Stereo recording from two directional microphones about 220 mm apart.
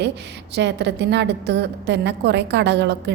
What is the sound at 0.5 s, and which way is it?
A woman's voice, 50° right (ahead or behind).